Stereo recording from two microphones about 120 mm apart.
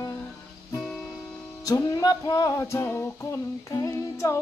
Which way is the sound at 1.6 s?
30° left (ahead or behind).